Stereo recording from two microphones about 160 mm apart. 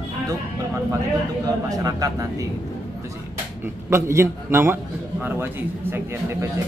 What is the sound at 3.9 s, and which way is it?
A man's voice, 15° right (ahead or behind).